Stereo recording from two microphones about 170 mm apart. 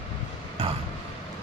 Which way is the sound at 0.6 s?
35° right (ahead or behind).